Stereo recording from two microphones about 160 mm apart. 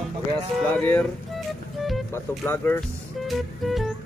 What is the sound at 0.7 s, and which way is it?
Speech, 10° left (ahead or behind).